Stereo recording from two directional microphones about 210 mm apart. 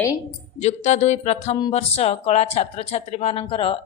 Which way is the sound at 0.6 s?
35° left (ahead or behind).